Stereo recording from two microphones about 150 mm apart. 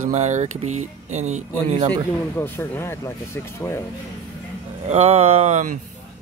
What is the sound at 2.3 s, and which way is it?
Speech, 15° left (ahead or behind).